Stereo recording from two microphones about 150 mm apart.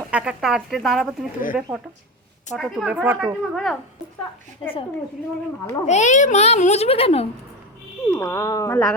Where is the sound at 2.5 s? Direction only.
Centre (ahead or behind).